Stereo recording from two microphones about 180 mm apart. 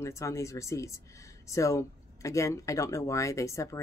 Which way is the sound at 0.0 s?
15° left (ahead or behind).